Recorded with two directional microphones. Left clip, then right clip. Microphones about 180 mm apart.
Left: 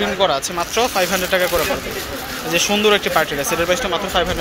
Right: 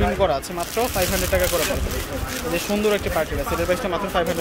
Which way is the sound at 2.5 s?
Centre (ahead or behind).